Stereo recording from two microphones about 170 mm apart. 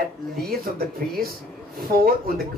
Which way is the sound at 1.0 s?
60° right (ahead or behind).